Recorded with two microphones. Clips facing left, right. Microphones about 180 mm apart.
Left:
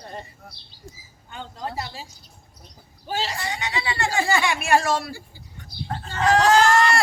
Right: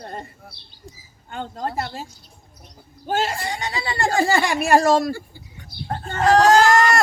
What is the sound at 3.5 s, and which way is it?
Speech, 35° right (ahead or behind).